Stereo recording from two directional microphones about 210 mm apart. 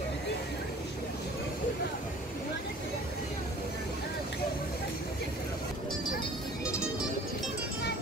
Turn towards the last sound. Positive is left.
turn(degrees=-5)  # may be behind; listen again after turning